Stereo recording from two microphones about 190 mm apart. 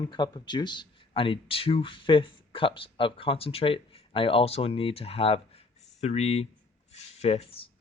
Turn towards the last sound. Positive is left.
turn(degrees=30)  # may be behind; listen again after turning